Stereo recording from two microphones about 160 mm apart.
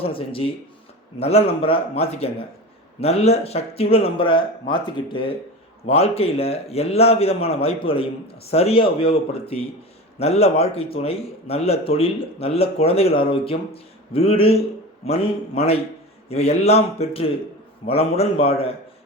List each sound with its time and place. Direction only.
0.0 s a man's voice: 35° left (ahead or behind)